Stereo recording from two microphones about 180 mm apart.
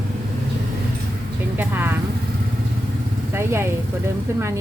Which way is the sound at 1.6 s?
10° right (ahead or behind).